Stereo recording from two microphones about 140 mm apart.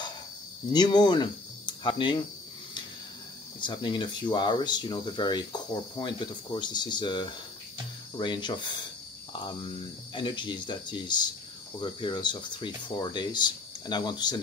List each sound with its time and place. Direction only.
0.7 s speech: 30° left (ahead or behind)
3.6 s speech: 35° left (ahead or behind)
10.1 s speech: 35° left (ahead or behind)